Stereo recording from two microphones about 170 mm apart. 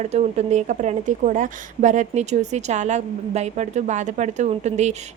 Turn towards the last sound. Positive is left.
turn(degrees=-40)  # may be behind; listen again after turning